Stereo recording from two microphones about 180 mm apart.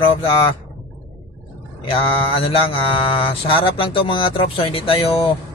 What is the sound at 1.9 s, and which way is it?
Mantra, 30° left (ahead or behind).